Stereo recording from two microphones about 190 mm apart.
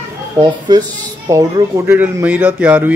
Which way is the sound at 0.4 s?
20° right (ahead or behind).